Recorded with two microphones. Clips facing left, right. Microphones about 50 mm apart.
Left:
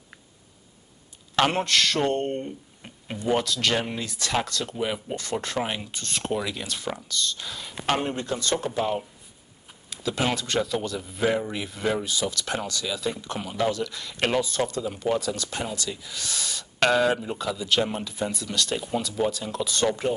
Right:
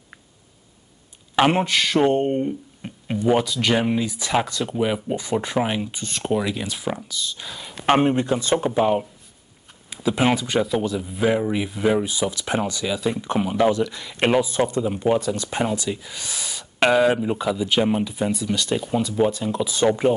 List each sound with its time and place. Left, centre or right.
1.3 s speech: centre
7.8 s speech: right; by 19.9 s centre